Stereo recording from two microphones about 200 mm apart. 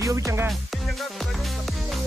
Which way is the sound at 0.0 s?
15° right (ahead or behind).